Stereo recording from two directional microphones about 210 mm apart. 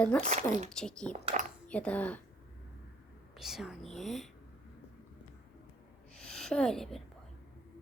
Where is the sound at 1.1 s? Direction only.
30° right (ahead or behind).